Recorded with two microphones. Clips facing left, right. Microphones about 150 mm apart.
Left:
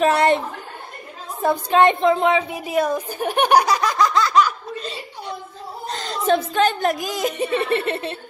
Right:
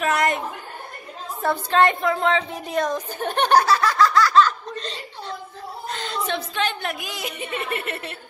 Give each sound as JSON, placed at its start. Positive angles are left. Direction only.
{"t": 0.0, "sound": "a woman's voice", "side_deg": 30}
{"t": 1.4, "sound": "a woman's voice", "side_deg": 15}
{"t": 5.9, "sound": "a woman's voice", "side_deg": 40}